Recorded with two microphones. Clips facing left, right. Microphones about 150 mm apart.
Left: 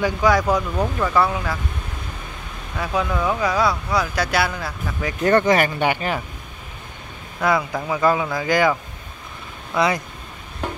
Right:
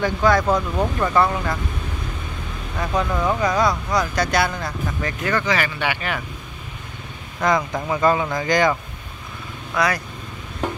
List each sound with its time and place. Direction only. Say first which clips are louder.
0.0 s speech: even; 10° left (ahead or behind)
0.6 s speech: even; 5° right (ahead or behind)
2.8 s speech: even; 5° left (ahead or behind)
5.3 s speech: left 7 dB; 50° left (ahead or behind)
7.4 s speech: even; 10° left (ahead or behind)
9.8 s speech: left 2 dB; 25° left (ahead or behind)